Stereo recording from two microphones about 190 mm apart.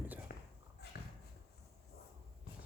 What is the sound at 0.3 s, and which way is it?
Walk, 50° left (ahead or behind).